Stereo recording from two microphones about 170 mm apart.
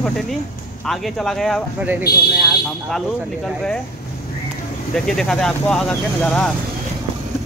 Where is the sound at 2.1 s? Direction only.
70° left (ahead or behind).